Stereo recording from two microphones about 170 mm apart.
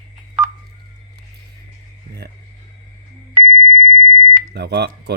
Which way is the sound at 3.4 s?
50° right (ahead or behind).